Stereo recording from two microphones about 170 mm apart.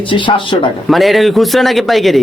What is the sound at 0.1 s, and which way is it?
Speech, 30° left (ahead or behind).